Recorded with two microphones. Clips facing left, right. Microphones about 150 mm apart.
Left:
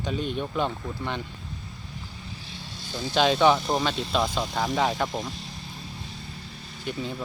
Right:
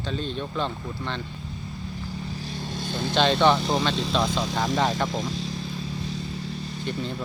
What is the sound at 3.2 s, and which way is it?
Speech, 5° left (ahead or behind).